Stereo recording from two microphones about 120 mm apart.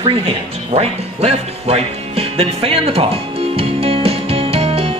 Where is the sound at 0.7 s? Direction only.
60° right (ahead or behind).